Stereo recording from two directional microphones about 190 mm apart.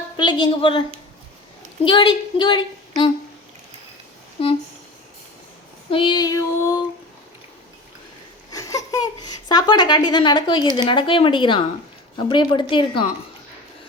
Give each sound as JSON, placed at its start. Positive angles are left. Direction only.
{"t": 0.2, "sound": "speech", "side_deg": 25}
{"t": 1.8, "sound": "speech", "side_deg": 25}
{"t": 4.4, "sound": "speech", "side_deg": 30}
{"t": 5.9, "sound": "child singing", "side_deg": 25}
{"t": 8.5, "sound": "speech", "side_deg": 20}